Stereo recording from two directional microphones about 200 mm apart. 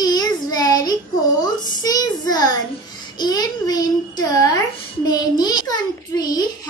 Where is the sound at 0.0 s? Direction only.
20° left (ahead or behind).